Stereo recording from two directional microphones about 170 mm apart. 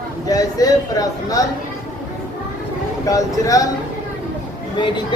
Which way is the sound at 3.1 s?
20° left (ahead or behind).